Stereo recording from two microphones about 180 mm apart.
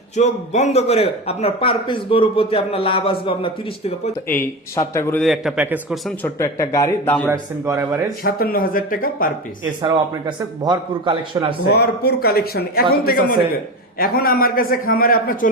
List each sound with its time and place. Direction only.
0.2 s a man's voice: 40° left (ahead or behind)
4.3 s speech: 15° left (ahead or behind)
5.2 s a man's voice: centre (ahead or behind)
6.2 s speech: 15° left (ahead or behind)
7.3 s a man's voice: 15° right (ahead or behind)
8.2 s a man's voice: 55° left (ahead or behind)
9.8 s a man's voice: 25° right (ahead or behind)
11.7 s a man's voice: 65° left (ahead or behind)